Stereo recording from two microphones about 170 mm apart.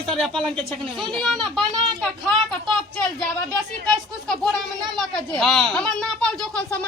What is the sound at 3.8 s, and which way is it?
Speech, 5° left (ahead or behind).